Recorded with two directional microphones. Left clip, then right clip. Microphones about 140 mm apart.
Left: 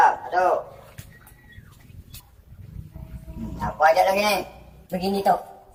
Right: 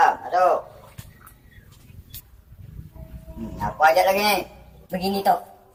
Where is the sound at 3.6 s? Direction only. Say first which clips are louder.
Right 1 dB; 10° right (ahead or behind).